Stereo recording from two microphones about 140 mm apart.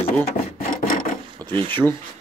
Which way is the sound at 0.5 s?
85° left.